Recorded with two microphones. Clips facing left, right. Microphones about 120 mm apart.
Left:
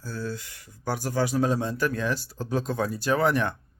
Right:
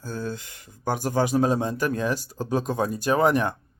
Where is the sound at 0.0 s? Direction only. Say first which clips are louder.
Right 2 dB; 20° right (ahead or behind).